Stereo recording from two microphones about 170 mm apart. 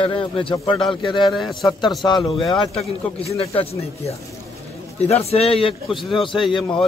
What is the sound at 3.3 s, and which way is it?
Speech, 35° left (ahead or behind).